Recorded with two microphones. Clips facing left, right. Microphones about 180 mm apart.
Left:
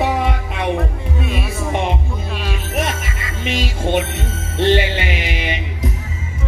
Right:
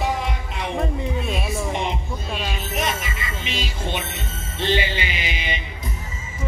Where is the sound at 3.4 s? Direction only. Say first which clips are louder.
Left 9 dB; 50° left (ahead or behind).